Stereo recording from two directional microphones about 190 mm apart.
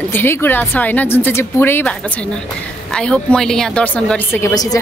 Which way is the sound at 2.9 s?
5° left (ahead or behind).